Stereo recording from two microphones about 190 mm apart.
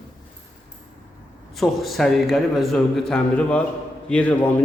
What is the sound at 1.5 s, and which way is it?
A man's voice, centre (ahead or behind).